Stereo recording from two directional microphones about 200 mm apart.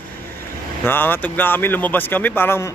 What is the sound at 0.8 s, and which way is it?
A man's voice, 10° left (ahead or behind).